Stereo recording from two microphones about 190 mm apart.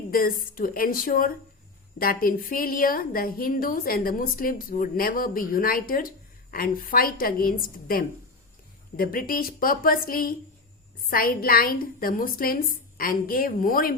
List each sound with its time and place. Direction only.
0.1 s a woman's voice: 50° left (ahead or behind)